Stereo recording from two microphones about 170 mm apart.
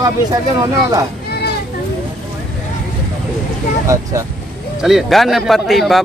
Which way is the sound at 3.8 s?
20° right (ahead or behind).